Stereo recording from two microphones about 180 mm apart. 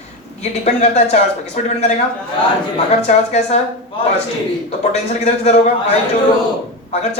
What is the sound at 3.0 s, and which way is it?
Speech, 40° left (ahead or behind).